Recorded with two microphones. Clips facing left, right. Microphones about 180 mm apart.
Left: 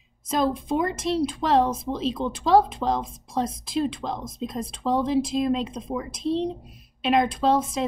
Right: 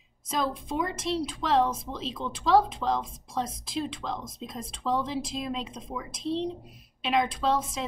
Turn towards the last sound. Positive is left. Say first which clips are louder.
# left 5 dB
turn(degrees=40)  # may be behind; listen again after turning